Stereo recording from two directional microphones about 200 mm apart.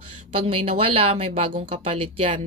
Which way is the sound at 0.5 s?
30° right (ahead or behind).